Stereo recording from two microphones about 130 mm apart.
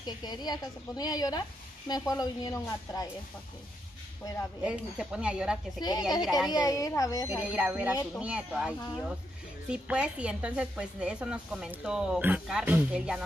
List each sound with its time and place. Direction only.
0.0 s a woman's voice: 30° left (ahead or behind)
4.6 s speech: 10° right (ahead or behind)
5.8 s a woman's voice: 30° left (ahead or behind)
6.2 s a woman's voice: centre (ahead or behind)
6.5 s speech: 25° left (ahead or behind)
7.2 s speech: 10° right (ahead or behind)